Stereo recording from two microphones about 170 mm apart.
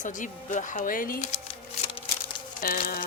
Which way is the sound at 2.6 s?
60° left (ahead or behind).